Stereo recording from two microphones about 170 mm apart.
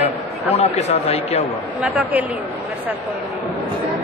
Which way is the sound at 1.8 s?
10° right (ahead or behind).